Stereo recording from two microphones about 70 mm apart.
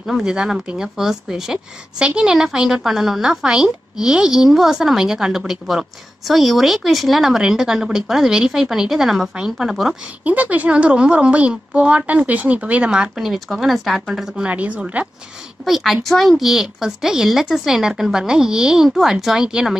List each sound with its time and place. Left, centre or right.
0.0 s speech: centre
10.2 s speech: right
13.2 s speech: centre
14.5 s a woman's voice: centre
15.6 s speech: centre